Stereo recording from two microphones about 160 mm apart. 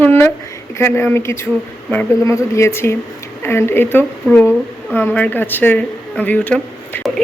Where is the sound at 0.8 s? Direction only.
15° left (ahead or behind).